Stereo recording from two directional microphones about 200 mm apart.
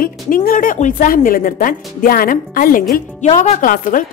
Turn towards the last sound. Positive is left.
turn(degrees=40)  # may be behind; listen again after turning